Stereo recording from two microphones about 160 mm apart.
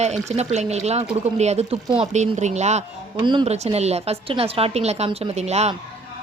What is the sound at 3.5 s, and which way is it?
A woman's voice, 40° right (ahead or behind).